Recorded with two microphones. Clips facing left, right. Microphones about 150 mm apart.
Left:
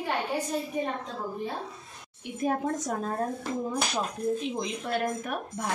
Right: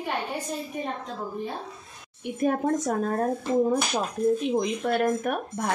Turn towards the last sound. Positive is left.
turn(degrees=-55)  # may be behind; listen again after turning